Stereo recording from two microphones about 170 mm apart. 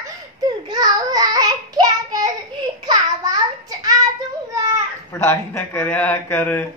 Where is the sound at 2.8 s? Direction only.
25° right (ahead or behind).